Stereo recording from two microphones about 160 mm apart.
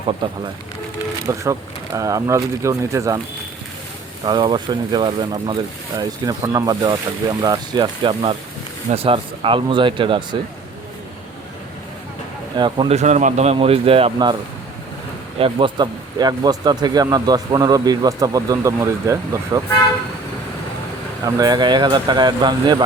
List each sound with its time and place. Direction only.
0.1 s a man's voice: 30° right (ahead or behind)
1.3 s speech: 20° right (ahead or behind)
4.3 s a man's voice: 25° right (ahead or behind)
12.5 s speech: 30° right (ahead or behind)
12.9 s a man's voice: 45° right (ahead or behind)
15.4 s speech: 35° right (ahead or behind)
21.2 s speech: 25° right (ahead or behind)